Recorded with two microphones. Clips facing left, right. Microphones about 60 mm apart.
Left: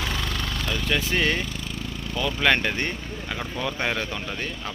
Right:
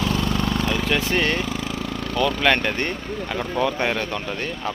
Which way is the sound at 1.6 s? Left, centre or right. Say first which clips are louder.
Right 6 dB; right.